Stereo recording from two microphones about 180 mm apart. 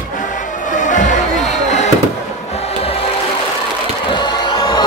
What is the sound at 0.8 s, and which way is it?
Music, 45° left (ahead or behind).